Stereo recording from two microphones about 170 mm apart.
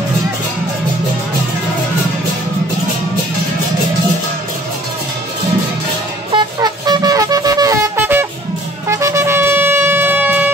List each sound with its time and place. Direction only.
6.3 s wind instrument: 25° right (ahead or behind)
8.8 s shofar: 15° right (ahead or behind)